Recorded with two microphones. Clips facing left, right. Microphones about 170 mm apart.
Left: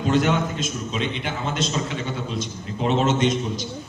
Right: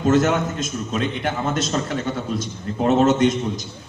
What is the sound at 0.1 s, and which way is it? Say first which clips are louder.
A man's voice: right 2 dB; 50° right (ahead or behind).